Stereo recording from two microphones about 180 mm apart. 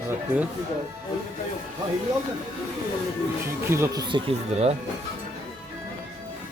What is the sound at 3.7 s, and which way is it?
Speech, 15° right (ahead or behind).